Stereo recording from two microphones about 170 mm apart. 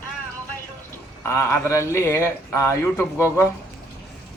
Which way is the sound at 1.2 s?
15° left (ahead or behind).